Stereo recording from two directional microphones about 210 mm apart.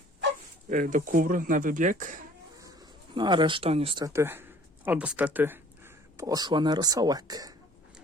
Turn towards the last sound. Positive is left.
turn(degrees=-20)  # may be behind; listen again after turning